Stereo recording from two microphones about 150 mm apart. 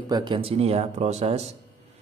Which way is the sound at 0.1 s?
30° right (ahead or behind).